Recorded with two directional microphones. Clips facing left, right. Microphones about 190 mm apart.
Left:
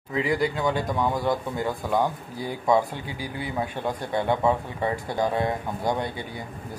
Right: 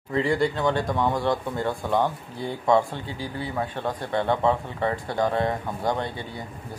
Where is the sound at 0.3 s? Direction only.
5° left (ahead or behind).